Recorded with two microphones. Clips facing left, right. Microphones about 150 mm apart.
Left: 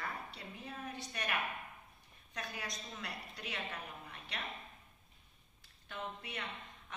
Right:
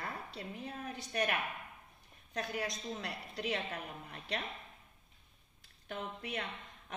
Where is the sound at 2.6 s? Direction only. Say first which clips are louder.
Right 6 dB; 35° right (ahead or behind).